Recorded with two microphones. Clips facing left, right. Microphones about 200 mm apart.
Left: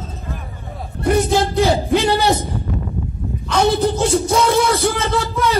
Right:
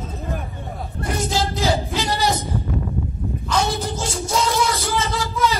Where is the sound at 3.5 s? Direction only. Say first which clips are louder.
Left 7 dB; 60° left (ahead or behind).